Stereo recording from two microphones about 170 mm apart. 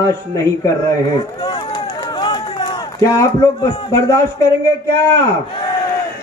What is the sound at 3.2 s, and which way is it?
Speech, 20° left (ahead or behind).